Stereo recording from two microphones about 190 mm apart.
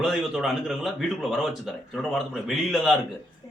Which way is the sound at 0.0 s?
Centre (ahead or behind).